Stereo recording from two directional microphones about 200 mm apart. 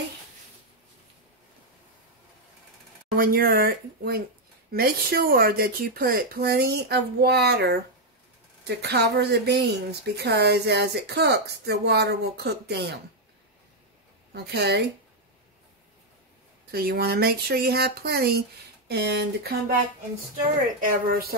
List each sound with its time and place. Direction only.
3.2 s speech: 45° right (ahead or behind)
14.3 s speech: 55° right (ahead or behind)
16.7 s speech: 50° right (ahead or behind)
20.8 s speech: 50° right (ahead or behind)